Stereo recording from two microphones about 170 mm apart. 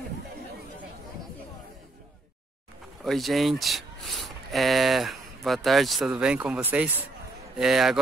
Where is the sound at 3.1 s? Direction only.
Centre (ahead or behind).